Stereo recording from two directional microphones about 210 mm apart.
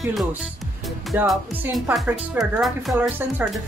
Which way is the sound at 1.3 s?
Centre (ahead or behind).